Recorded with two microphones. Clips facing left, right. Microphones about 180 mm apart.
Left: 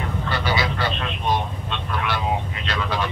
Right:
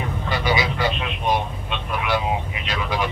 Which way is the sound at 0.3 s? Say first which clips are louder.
Right 2 dB; 15° right (ahead or behind).